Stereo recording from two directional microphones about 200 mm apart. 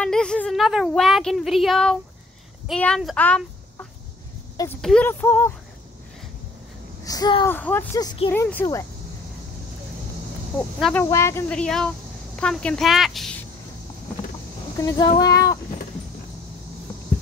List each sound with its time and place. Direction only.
0.0 s a woman's voice: 5° left (ahead or behind)
4.8 s speech: 5° left (ahead or behind)
7.1 s speech: 20° left (ahead or behind)
7.5 s speech: 10° left (ahead or behind)
10.8 s a woman's voice: 5° left (ahead or behind)
14.9 s speech: 20° left (ahead or behind)